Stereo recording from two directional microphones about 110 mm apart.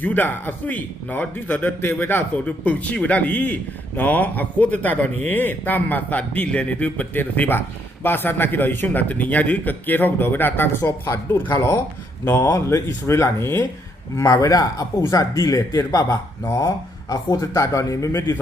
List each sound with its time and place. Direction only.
0.0 s a man's voice: 15° left (ahead or behind)